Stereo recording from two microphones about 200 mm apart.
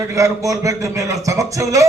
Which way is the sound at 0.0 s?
15° right (ahead or behind).